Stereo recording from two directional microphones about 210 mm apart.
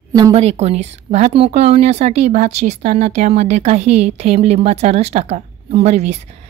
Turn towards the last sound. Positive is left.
turn(degrees=-30)  # may be behind; listen again after turning